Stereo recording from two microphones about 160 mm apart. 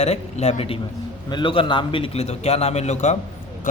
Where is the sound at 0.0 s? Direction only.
40° left (ahead or behind).